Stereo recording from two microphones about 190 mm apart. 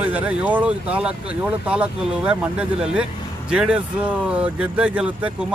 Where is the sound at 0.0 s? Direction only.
10° right (ahead or behind).